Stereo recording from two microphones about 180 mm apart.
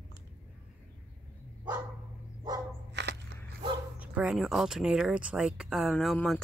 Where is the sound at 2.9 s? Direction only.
70° right (ahead or behind).